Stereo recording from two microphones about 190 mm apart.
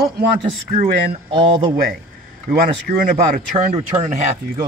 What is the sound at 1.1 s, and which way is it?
Speech, 25° right (ahead or behind).